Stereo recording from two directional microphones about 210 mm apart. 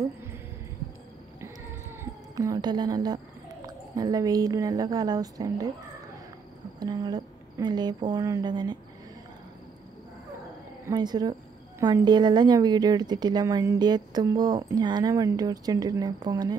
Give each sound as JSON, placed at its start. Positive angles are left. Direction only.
{"t": 2.0, "sound": "a woman's voice", "side_deg": -15}
{"t": 6.8, "sound": "a woman's voice", "side_deg": -20}
{"t": 10.9, "sound": "a woman's voice", "side_deg": -20}